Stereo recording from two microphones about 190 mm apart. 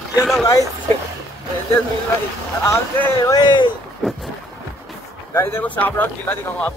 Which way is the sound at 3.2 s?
20° left (ahead or behind).